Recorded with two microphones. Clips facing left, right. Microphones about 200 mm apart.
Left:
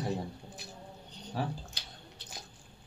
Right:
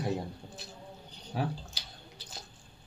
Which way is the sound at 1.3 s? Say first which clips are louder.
Right 2 dB; 5° right (ahead or behind).